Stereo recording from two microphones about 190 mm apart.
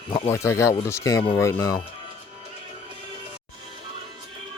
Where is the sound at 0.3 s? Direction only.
15° left (ahead or behind).